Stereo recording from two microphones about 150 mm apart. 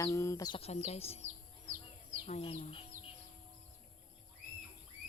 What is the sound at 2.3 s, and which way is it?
Speech, 40° left (ahead or behind).